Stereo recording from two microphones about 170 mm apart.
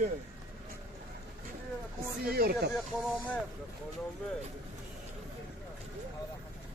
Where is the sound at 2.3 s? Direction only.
65° right (ahead or behind).